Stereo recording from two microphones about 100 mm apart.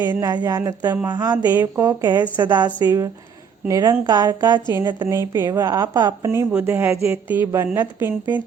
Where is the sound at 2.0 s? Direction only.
45° right (ahead or behind).